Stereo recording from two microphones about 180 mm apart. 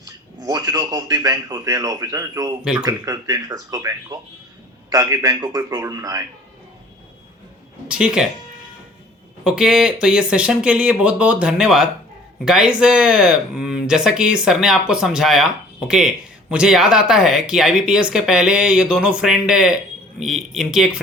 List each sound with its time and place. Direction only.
0.4 s speech: 20° right (ahead or behind)
7.9 s speech: 5° right (ahead or behind)
9.4 s speech: 5° right (ahead or behind)